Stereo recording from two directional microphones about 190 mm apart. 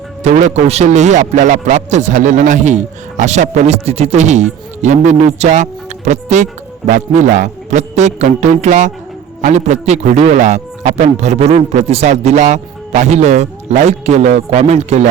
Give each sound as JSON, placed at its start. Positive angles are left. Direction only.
{"t": 0.2, "sound": "a man's voice", "side_deg": -35}